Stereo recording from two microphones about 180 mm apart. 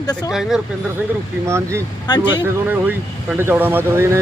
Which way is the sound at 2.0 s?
25° left (ahead or behind).